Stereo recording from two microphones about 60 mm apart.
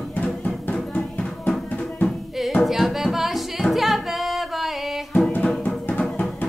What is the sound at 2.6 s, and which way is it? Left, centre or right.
Music, centre.